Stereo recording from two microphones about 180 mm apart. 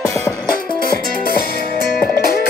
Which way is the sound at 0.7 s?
55° left (ahead or behind).